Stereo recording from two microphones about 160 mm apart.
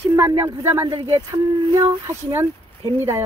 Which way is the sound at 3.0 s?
15° right (ahead or behind).